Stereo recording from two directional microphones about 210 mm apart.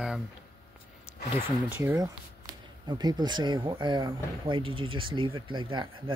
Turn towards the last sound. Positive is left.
turn(degrees=-20)  # may be behind; listen again after turning